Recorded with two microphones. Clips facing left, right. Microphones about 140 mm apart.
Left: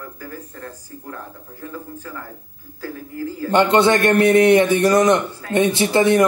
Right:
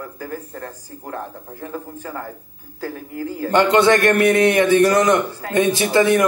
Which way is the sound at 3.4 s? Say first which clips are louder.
Even; 20° left (ahead or behind).